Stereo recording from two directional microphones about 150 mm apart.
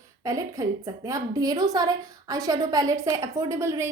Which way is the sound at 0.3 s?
25° right (ahead or behind).